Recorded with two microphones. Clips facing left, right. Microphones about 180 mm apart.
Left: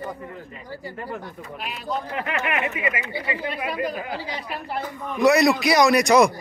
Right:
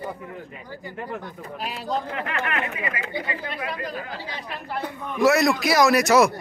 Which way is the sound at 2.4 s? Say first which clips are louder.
Left 3 dB; 15° left (ahead or behind).